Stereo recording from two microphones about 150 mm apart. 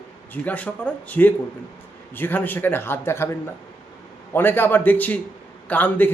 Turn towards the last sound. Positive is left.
turn(degrees=10)  # may be behind; listen again after turning